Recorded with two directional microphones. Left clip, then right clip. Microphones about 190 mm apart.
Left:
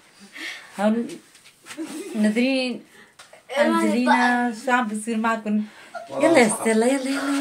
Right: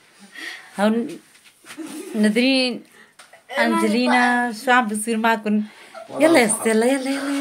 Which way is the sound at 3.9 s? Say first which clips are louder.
Right 1 dB; 55° right (ahead or behind).